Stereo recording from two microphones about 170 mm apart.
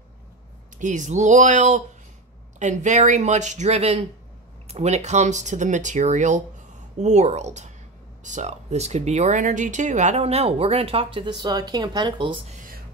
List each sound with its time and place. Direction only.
0.7 s speech: 45° right (ahead or behind); by 12.4 s 25° right (ahead or behind)